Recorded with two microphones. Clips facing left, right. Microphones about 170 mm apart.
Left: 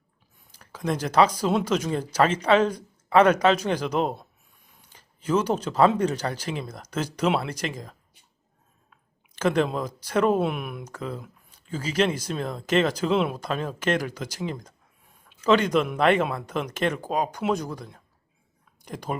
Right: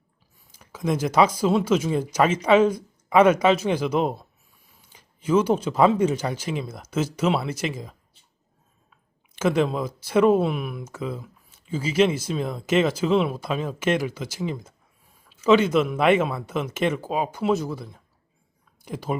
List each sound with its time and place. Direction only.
0.3 s speech: 10° right (ahead or behind)
9.4 s speech: 5° right (ahead or behind)